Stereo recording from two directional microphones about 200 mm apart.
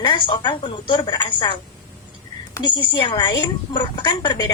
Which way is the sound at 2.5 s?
25° left (ahead or behind).